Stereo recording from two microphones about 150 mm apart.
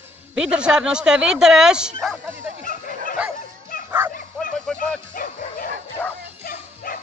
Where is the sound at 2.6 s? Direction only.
65° left (ahead or behind).